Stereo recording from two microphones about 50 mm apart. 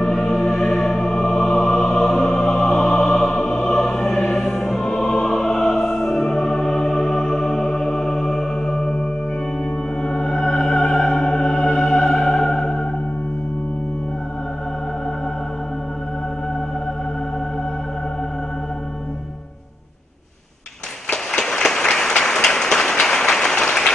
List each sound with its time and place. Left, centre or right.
0.0 s music: centre
3.5 s music: centre
10.0 s music: centre
21.1 s a sound: centre